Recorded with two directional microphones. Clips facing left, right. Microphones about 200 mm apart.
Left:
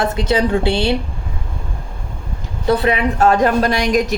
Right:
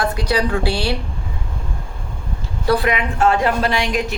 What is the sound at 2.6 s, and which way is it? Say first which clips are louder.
A woman's voice: left 3 dB; 25° left (ahead or behind).